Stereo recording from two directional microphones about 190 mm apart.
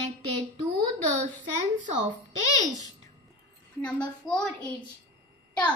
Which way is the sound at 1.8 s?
40° right (ahead or behind).